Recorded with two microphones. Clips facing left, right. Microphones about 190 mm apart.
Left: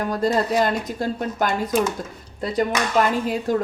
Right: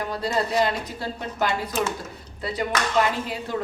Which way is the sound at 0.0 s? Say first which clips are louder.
Left 5 dB; 45° left (ahead or behind).